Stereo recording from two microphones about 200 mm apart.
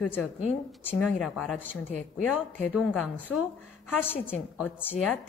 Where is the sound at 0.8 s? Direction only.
10° left (ahead or behind).